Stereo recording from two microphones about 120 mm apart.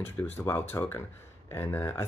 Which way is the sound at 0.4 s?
20° left (ahead or behind).